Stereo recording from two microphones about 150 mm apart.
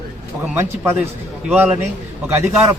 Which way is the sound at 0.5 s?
15° right (ahead or behind).